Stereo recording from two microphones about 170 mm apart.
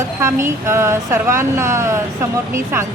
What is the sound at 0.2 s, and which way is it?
A woman's voice, 15° right (ahead or behind).